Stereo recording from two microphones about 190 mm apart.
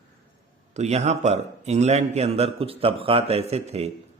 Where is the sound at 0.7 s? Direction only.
35° right (ahead or behind).